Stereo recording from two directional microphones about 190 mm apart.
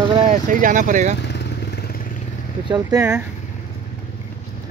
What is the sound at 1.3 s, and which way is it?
Vehicle, 60° left (ahead or behind).